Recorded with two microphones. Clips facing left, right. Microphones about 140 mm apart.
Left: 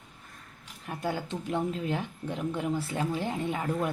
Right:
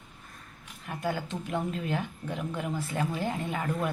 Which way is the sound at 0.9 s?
30° left (ahead or behind).